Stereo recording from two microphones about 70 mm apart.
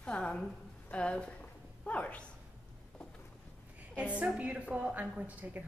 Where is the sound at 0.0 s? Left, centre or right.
Centre.